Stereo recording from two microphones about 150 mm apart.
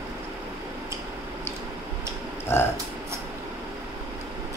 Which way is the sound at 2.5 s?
15° left (ahead or behind).